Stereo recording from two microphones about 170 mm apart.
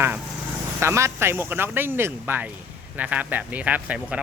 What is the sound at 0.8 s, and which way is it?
Speech, 15° right (ahead or behind).